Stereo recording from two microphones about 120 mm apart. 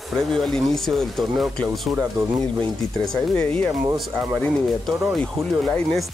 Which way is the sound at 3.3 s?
10° left (ahead or behind).